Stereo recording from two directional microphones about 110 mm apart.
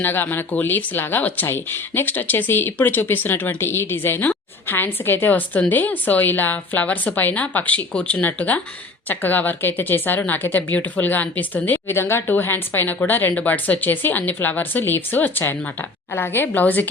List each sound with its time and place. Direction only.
0.0 s speech: 20° left (ahead or behind)